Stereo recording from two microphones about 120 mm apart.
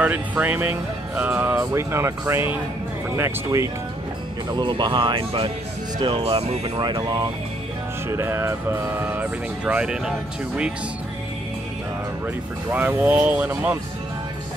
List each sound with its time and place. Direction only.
0.0 s speech: 15° right (ahead or behind)
4.5 s speech: 40° right (ahead or behind); by 6.7 s 60° right (ahead or behind)
6.8 s speech: 35° right (ahead or behind)
8.1 s speech: 25° right (ahead or behind); by 10.7 s 10° right (ahead or behind)
12.7 s speech: 15° right (ahead or behind)